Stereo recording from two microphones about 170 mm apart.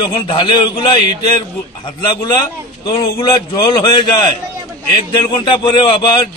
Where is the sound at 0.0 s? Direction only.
30° left (ahead or behind).